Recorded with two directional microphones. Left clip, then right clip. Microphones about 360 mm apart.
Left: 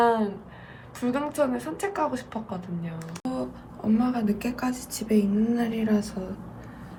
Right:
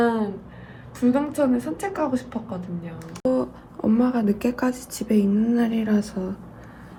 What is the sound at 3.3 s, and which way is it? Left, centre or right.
A woman's voice, centre.